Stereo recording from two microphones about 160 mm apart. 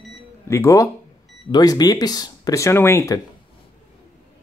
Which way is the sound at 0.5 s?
20° left (ahead or behind).